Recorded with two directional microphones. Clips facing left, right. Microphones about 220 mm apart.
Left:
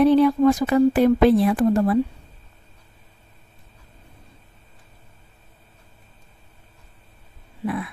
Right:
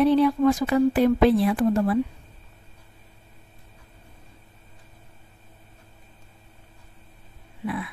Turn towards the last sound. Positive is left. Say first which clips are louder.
# left 3 dB
turn(degrees=45)  # may be behind; listen again after turning